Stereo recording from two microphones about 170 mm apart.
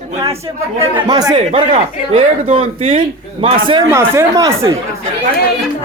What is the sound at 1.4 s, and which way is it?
A man's voice, 40° right (ahead or behind).